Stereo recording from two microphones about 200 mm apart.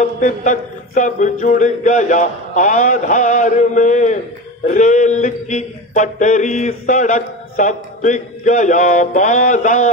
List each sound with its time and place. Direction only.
0.0 s mantra: 40° left (ahead or behind)